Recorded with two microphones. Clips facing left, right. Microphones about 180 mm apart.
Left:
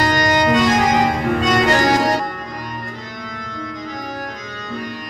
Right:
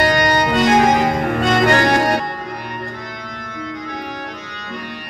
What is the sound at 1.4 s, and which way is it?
Music, 60° right (ahead or behind).